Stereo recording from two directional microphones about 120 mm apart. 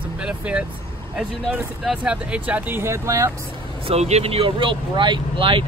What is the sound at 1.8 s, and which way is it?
Speech, 10° right (ahead or behind).